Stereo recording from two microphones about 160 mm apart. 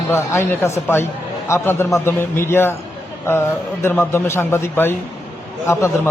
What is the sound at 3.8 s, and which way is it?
A man's voice, 15° left (ahead or behind).